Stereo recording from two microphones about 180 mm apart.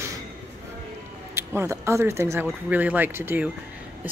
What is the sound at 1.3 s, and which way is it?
Speech, 15° right (ahead or behind).